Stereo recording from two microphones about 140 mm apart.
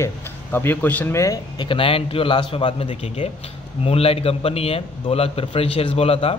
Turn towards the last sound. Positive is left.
turn(degrees=45)  # may be behind; listen again after turning